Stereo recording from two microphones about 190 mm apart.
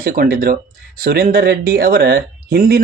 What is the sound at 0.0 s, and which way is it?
Speech, 50° right (ahead or behind).